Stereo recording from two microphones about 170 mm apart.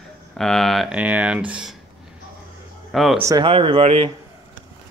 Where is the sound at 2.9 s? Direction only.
Centre (ahead or behind).